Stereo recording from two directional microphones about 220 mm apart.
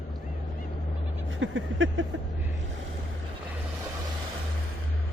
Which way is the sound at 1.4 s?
60° right (ahead or behind).